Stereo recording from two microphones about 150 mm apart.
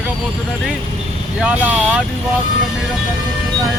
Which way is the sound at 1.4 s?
10° right (ahead or behind).